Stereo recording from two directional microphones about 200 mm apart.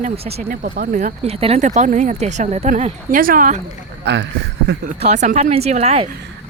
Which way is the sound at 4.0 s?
60° right (ahead or behind).